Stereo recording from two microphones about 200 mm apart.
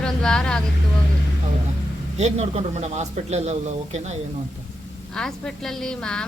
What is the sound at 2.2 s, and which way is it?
A man's voice, 35° right (ahead or behind).